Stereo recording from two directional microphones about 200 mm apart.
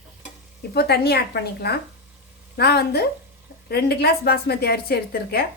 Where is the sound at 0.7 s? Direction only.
55° left (ahead or behind).